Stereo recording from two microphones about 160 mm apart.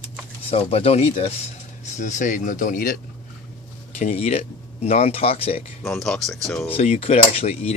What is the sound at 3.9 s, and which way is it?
Speech, 45° left (ahead or behind).